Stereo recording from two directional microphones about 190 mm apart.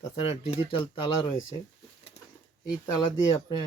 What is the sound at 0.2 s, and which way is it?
Speech, 30° left (ahead or behind).